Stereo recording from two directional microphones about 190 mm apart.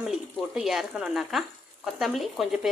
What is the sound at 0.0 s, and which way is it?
Speech, centre (ahead or behind).